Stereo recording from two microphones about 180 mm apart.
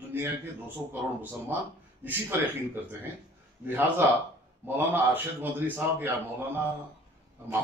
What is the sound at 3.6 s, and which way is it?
A man's voice, 10° right (ahead or behind).